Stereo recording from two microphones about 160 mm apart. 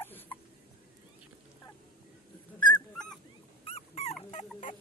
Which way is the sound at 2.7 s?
5° left (ahead or behind).